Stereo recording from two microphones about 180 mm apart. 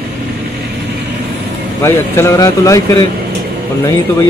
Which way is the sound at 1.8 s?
15° left (ahead or behind).